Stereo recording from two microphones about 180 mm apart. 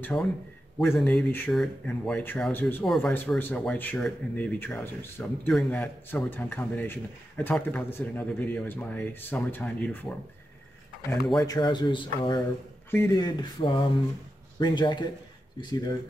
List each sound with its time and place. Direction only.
0.1 s speech: 15° left (ahead or behind)
11.3 s speech: 20° left (ahead or behind)
12.9 s speech: 15° left (ahead or behind)